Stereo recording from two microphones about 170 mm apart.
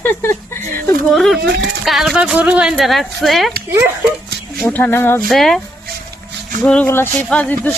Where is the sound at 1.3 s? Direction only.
75° right (ahead or behind).